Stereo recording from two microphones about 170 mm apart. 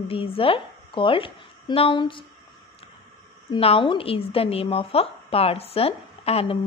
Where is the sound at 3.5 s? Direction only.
30° left (ahead or behind).